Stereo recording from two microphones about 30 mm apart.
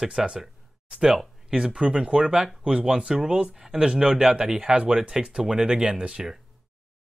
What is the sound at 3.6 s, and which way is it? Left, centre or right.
Speech, centre.